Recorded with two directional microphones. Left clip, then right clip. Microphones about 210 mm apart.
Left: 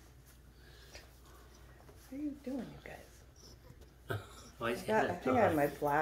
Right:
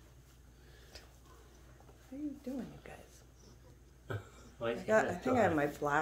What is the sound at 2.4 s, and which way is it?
Speech, 10° right (ahead or behind).